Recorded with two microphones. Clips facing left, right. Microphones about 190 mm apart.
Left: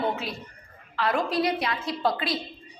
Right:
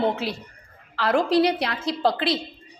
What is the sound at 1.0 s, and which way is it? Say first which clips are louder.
Speech: right 6 dB; 75° right (ahead or behind).